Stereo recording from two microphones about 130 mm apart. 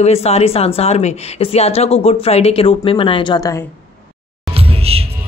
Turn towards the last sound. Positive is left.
turn(degrees=-50)  # may be behind; listen again after turning